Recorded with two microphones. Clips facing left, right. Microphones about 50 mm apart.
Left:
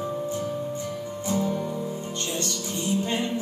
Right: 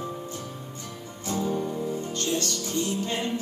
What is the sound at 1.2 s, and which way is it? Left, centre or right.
Music, left.